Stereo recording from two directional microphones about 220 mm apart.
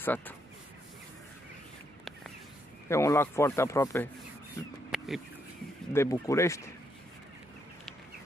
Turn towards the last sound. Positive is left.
turn(degrees=15)  # may be behind; listen again after turning